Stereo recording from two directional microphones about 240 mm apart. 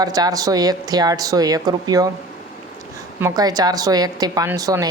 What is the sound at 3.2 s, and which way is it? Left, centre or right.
Speech, centre.